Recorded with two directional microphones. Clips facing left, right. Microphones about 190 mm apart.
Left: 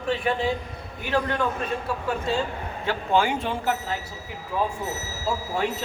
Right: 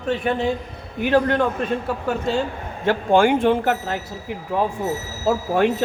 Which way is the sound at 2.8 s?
50° right (ahead or behind).